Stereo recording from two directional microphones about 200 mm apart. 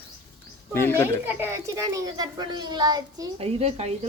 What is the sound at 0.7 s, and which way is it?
Speech, 10° left (ahead or behind).